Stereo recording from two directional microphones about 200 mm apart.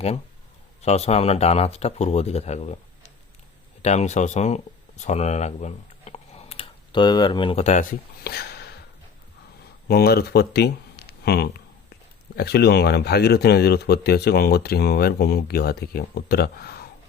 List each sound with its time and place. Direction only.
0.8 s speech: 30° left (ahead or behind); by 8.8 s 55° left (ahead or behind)
9.9 s speech: 55° left (ahead or behind)